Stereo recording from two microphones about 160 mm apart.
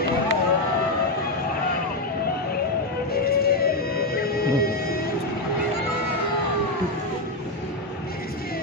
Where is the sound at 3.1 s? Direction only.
75° left (ahead or behind).